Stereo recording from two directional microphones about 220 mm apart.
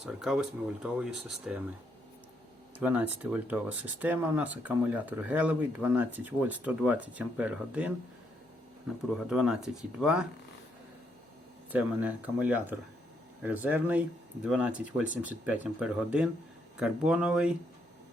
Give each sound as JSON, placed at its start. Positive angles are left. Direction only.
{"t": 0.0, "sound": "speech", "side_deg": 0}
{"t": 2.7, "sound": "speech", "side_deg": -5}
{"t": 9.3, "sound": "speech", "side_deg": 0}
{"t": 11.7, "sound": "speech", "side_deg": -5}